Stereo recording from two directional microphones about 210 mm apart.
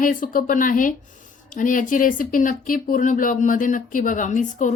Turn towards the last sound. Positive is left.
turn(degrees=35)  # may be behind; listen again after turning